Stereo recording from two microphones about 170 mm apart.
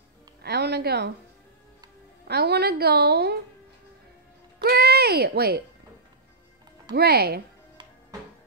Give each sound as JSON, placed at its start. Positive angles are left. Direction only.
{"t": 0.4, "sound": "speech", "side_deg": -75}
{"t": 2.2, "sound": "a woman's voice", "side_deg": -70}
{"t": 4.6, "sound": "speech", "side_deg": -65}
{"t": 7.0, "sound": "a woman's voice", "side_deg": -70}